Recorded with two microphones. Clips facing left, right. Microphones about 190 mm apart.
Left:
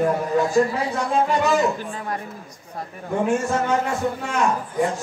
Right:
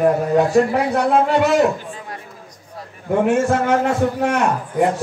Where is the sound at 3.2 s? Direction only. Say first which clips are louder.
Right 4 dB; 65° right (ahead or behind).